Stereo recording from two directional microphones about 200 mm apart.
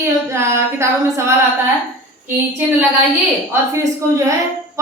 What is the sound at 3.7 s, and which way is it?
Speech, 15° right (ahead or behind).